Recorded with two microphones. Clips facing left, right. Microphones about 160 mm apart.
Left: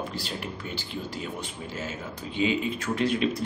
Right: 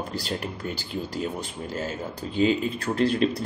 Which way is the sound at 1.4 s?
40° right (ahead or behind).